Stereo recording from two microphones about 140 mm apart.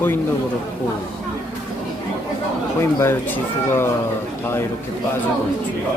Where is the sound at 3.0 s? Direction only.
15° left (ahead or behind).